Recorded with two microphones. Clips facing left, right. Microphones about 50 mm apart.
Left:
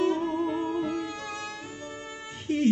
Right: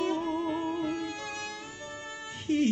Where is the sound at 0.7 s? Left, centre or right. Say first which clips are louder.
Left 2 dB; left.